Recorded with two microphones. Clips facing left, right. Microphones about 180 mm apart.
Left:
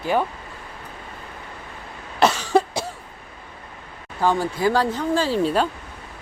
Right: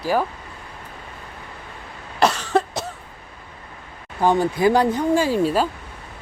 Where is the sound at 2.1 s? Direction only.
Centre (ahead or behind).